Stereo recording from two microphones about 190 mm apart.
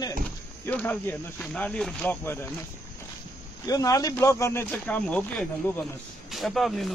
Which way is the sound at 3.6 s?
20° left (ahead or behind).